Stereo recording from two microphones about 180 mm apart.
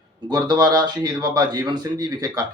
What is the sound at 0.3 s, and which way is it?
Speech, 25° right (ahead or behind).